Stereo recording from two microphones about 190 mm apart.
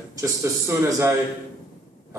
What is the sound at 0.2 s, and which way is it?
Speech, 15° right (ahead or behind).